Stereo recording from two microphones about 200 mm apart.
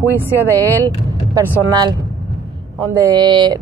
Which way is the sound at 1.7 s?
20° right (ahead or behind).